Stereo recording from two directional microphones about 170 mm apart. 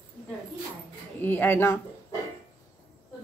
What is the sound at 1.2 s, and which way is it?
Speech, 10° left (ahead or behind).